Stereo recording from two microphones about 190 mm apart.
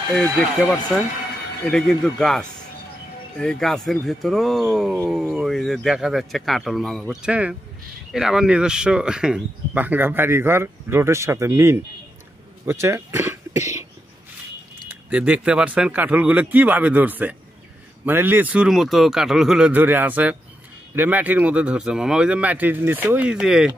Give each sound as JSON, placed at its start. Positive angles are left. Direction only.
{"t": 0.1, "sound": "speech", "side_deg": 5}
{"t": 14.9, "sound": "speech", "side_deg": -5}